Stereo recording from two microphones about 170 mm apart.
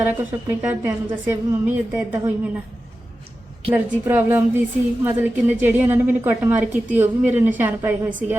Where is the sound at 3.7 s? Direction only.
10° right (ahead or behind).